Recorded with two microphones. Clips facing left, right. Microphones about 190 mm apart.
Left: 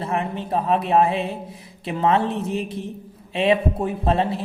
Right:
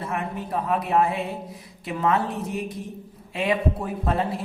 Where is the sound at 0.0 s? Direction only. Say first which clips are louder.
Left 4 dB; 25° left (ahead or behind).